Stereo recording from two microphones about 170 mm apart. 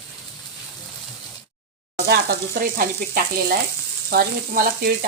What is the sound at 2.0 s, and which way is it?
Frying, 60° right (ahead or behind).